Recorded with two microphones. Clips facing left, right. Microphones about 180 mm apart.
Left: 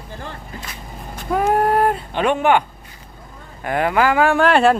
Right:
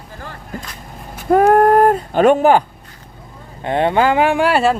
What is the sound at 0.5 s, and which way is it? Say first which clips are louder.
Vehicle: right 5 dB; 45° right (ahead or behind).